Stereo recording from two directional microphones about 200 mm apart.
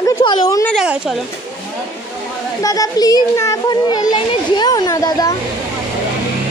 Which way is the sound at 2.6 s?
15° left (ahead or behind).